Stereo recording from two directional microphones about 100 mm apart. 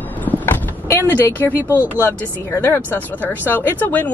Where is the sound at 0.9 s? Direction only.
20° left (ahead or behind).